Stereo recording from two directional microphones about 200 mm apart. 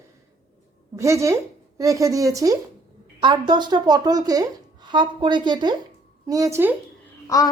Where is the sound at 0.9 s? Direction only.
15° right (ahead or behind).